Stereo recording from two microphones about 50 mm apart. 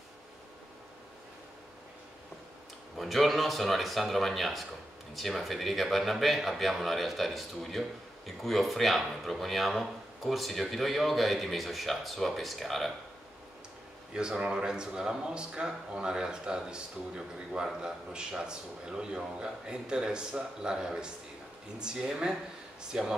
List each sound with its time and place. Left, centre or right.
3.0 s speech: centre
14.1 s a man's voice: centre